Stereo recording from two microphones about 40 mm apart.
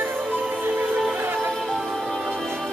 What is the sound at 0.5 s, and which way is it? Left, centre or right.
Music, right.